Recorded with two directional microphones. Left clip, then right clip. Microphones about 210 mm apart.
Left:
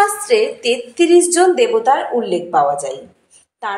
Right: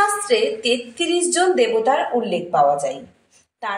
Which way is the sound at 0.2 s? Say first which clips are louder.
Left 3 dB; 25° left (ahead or behind).